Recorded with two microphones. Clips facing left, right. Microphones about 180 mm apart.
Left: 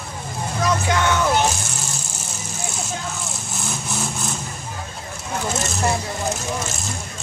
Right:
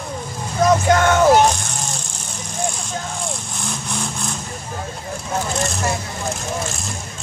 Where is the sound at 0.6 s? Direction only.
45° right (ahead or behind).